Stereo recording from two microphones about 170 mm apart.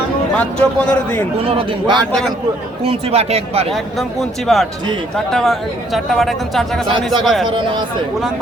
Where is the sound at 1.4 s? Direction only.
30° right (ahead or behind).